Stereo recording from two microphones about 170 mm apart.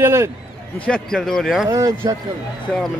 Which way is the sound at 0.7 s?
5° left (ahead or behind).